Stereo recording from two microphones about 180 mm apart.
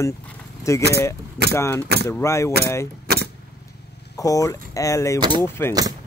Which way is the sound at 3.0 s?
60° right (ahead or behind).